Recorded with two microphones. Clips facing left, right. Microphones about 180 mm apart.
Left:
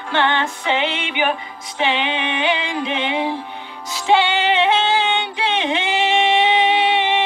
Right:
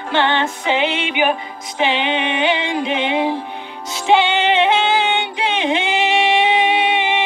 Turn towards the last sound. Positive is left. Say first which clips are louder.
# even
turn(degrees=-10)  # may be behind; listen again after turning